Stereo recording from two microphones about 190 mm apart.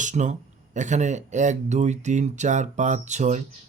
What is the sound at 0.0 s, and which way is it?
Speech, 40° right (ahead or behind).